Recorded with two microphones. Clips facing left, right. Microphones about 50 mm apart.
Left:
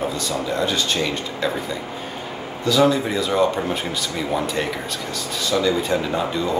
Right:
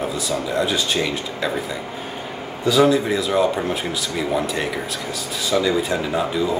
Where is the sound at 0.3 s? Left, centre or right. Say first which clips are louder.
Right 3 dB; centre.